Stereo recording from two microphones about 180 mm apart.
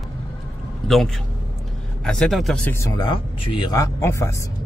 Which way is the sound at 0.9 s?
Centre (ahead or behind).